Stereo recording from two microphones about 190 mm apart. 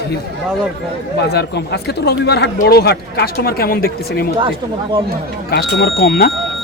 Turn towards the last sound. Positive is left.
turn(degrees=50)  # may be behind; listen again after turning